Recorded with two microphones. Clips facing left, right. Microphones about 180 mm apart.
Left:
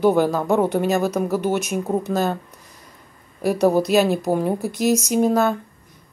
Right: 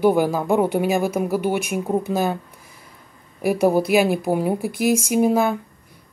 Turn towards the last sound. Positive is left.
turn(degrees=-10)  # may be behind; listen again after turning